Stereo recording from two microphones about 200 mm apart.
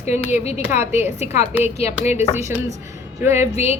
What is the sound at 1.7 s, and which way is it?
Speech, 30° left (ahead or behind).